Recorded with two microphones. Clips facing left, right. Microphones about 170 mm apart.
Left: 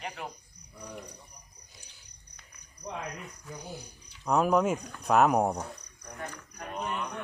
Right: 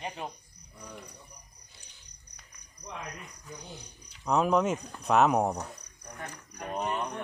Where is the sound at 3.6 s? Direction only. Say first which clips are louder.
Left 4 dB; 10° left (ahead or behind).